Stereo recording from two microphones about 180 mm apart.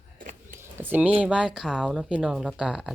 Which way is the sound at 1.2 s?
5° right (ahead or behind).